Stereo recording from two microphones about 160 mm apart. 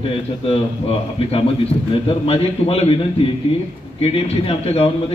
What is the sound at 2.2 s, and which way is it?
Speech, 40° left (ahead or behind).